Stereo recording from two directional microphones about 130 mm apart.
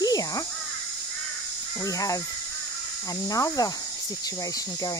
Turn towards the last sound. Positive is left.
turn(degrees=25)  # may be behind; listen again after turning